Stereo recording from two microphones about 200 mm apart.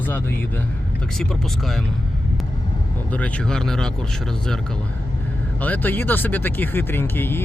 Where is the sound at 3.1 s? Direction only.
5° left (ahead or behind).